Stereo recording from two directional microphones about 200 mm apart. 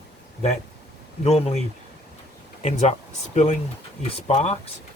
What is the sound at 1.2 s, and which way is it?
Speech, 30° left (ahead or behind).